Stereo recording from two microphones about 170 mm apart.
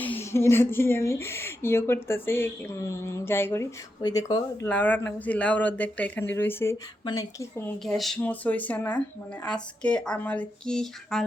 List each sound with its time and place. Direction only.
0.0 s speech: 10° left (ahead or behind)
7.9 s speech: centre (ahead or behind)